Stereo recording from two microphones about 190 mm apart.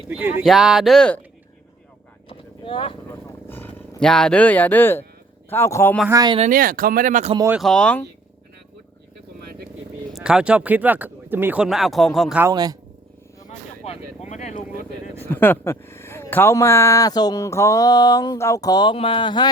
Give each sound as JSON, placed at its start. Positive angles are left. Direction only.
{"t": 0.1, "sound": "speech", "side_deg": -10}
{"t": 2.6, "sound": "speech", "side_deg": 25}
{"t": 3.5, "sound": "speech", "side_deg": 10}
{"t": 6.1, "sound": "speech", "side_deg": -20}
{"t": 6.4, "sound": "speech", "side_deg": -45}
{"t": 7.3, "sound": "speech", "side_deg": -15}
{"t": 7.6, "sound": "speech", "side_deg": 5}
{"t": 10.1, "sound": "speech", "side_deg": -5}
{"t": 12.4, "sound": "speech", "side_deg": -20}
{"t": 13.5, "sound": "vehicle", "side_deg": 30}
{"t": 15.2, "sound": "speech", "side_deg": 10}